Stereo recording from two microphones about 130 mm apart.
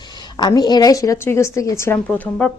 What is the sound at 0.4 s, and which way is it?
A woman's voice, 30° left (ahead or behind).